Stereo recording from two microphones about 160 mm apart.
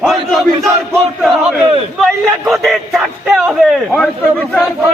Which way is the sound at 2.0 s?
Centre (ahead or behind).